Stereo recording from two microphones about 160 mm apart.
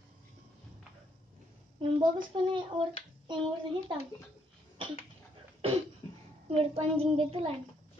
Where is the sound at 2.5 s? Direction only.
30° right (ahead or behind).